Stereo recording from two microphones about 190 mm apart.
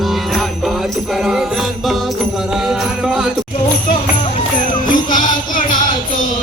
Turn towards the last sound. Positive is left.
turn(degrees=45)  # may be behind; listen again after turning